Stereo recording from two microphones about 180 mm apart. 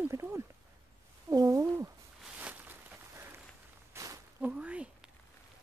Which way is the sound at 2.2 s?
5° right (ahead or behind).